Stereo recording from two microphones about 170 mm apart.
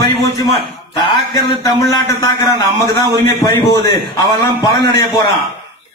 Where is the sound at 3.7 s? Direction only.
25° left (ahead or behind).